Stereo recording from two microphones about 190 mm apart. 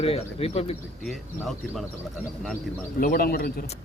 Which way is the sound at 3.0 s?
50° left (ahead or behind).